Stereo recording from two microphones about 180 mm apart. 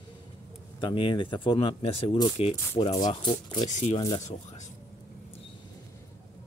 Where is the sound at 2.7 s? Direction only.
20° left (ahead or behind).